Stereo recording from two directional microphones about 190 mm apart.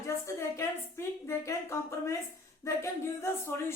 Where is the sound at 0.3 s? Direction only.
15° left (ahead or behind).